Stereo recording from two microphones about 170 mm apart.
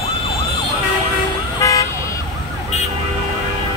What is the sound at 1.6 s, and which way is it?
Vehicle, 20° left (ahead or behind).